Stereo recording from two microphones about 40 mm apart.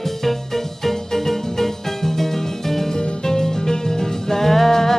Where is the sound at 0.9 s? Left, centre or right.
Centre.